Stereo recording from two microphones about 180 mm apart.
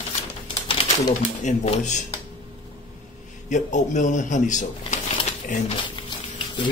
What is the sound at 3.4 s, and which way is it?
Speech, 45° left (ahead or behind).